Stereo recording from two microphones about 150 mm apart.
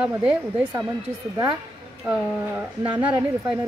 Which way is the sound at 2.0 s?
10° right (ahead or behind).